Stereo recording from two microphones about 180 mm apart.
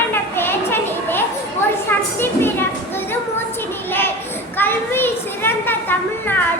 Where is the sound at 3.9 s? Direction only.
10° left (ahead or behind).